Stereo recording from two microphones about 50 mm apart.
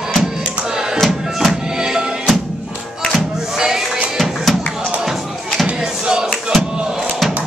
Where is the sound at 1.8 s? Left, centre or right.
Centre.